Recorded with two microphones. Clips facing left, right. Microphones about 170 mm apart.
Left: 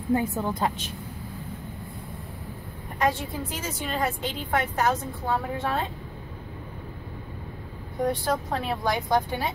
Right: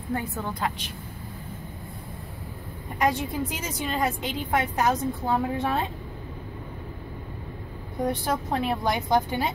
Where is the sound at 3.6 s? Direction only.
15° right (ahead or behind).